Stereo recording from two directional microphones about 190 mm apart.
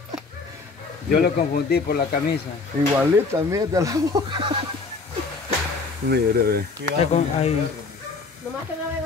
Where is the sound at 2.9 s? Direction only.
15° right (ahead or behind).